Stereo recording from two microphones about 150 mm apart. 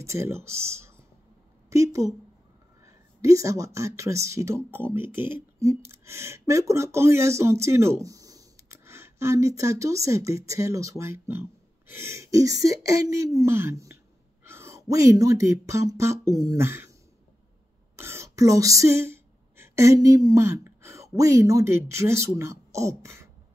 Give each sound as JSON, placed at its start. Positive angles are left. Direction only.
{"t": 0.0, "sound": "speech", "side_deg": -20}
{"t": 1.7, "sound": "a sound", "side_deg": -20}
{"t": 3.2, "sound": "speech", "side_deg": -20}
{"t": 17.9, "sound": "speech", "side_deg": -15}